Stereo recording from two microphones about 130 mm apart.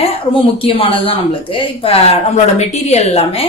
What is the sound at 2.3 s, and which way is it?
A woman's voice, 60° left (ahead or behind).